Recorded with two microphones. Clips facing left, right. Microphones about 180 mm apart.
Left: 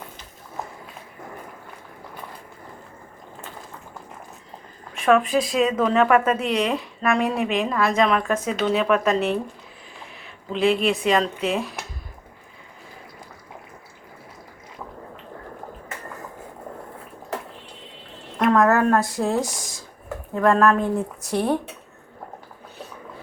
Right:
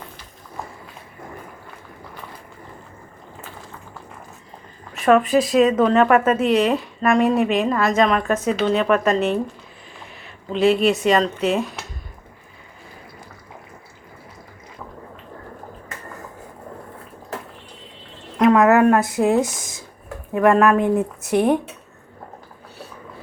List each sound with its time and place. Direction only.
4.9 s speech: centre (ahead or behind)
10.5 s speech: centre (ahead or behind)
18.3 s a sound: centre (ahead or behind)
18.6 s speech: 15° right (ahead or behind)